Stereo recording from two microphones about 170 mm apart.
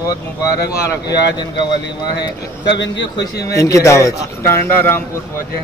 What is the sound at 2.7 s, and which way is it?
Speech, 90° left.